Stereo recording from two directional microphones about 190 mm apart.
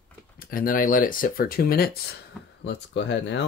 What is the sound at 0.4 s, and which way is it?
Speech, 50° left (ahead or behind).